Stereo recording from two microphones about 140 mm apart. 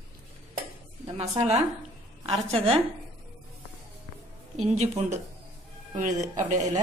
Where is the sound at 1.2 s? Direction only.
50° right (ahead or behind).